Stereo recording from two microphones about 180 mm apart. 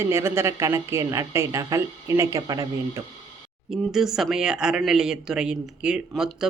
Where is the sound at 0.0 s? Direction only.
15° right (ahead or behind).